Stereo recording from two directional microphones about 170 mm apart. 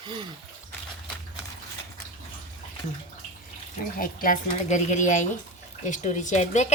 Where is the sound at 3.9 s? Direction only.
55° left (ahead or behind).